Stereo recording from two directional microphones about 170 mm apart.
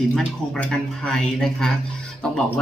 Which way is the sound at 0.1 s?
5° left (ahead or behind).